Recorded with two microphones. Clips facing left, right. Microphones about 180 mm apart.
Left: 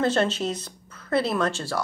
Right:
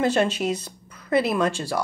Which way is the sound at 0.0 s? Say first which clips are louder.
Right 2 dB; 10° right (ahead or behind).